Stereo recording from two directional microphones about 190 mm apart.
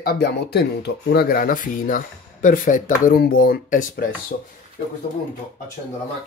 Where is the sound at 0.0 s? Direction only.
55° left (ahead or behind).